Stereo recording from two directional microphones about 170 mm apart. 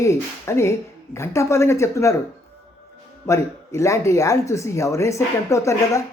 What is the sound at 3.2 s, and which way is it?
Speech, 15° left (ahead or behind).